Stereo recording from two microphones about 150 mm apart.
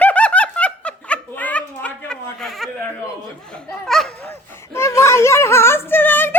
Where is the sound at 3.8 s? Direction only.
Centre (ahead or behind).